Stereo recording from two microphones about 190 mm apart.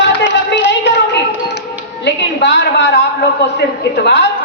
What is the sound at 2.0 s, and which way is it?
Speech, 65° left (ahead or behind).